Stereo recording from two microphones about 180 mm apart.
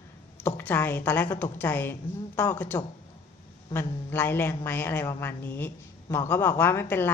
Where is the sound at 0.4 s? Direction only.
10° left (ahead or behind).